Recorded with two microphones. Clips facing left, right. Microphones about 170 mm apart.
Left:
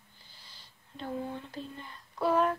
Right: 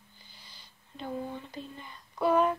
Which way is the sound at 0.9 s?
5° right (ahead or behind).